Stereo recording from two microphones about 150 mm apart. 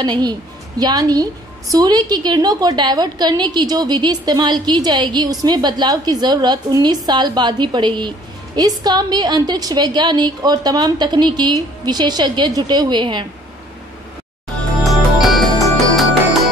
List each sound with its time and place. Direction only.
0.0 s a woman's voice: 30° right (ahead or behind)
14.8 s music: centre (ahead or behind)